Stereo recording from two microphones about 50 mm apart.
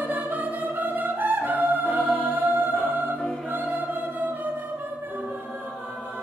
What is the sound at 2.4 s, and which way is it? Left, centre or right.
Music, right.